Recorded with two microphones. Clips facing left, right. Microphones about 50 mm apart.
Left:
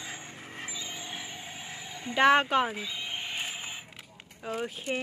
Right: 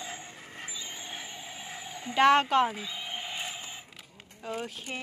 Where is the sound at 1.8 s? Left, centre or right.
Centre.